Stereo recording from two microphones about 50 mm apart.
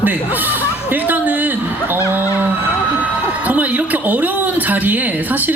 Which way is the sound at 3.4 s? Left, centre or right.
Right.